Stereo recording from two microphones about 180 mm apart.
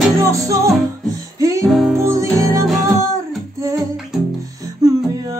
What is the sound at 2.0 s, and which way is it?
Music, 15° right (ahead or behind).